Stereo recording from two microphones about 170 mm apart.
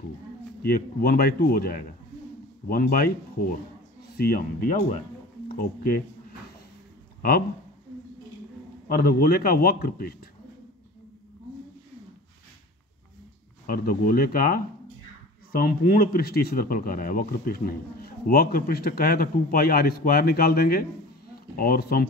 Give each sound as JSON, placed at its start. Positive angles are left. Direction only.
{"t": 0.6, "sound": "speech", "side_deg": 60}
{"t": 7.2, "sound": "speech", "side_deg": 60}
{"t": 8.9, "sound": "speech", "side_deg": 60}
{"t": 13.7, "sound": "speech", "side_deg": 60}